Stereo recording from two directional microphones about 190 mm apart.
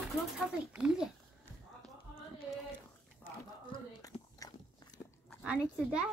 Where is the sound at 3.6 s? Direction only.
20° left (ahead or behind).